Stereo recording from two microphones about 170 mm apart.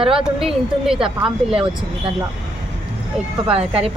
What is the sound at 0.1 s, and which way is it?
A woman's voice, 5° right (ahead or behind).